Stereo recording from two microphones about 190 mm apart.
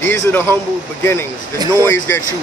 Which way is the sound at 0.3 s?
10° left (ahead or behind).